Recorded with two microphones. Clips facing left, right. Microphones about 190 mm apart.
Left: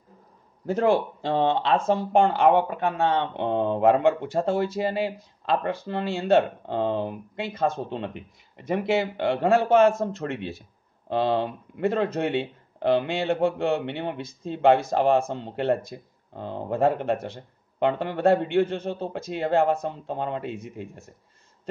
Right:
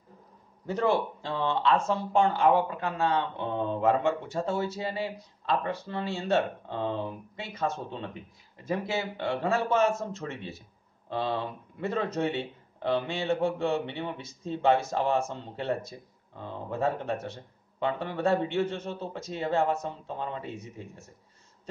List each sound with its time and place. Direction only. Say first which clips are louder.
0.8 s a man's voice: left 4 dB; 65° left (ahead or behind)